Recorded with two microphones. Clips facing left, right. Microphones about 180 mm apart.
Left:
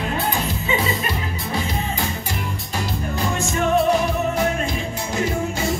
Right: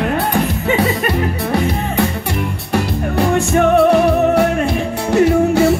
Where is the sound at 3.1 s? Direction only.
65° right (ahead or behind).